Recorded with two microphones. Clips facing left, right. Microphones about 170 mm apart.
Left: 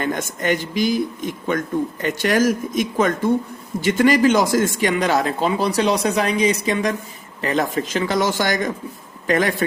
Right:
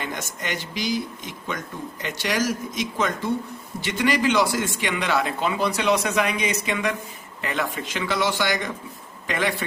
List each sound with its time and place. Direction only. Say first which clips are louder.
0.0 s speech: left 8 dB; 50° left (ahead or behind)